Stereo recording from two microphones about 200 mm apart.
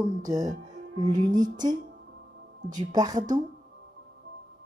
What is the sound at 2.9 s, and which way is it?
Speech, 20° right (ahead or behind).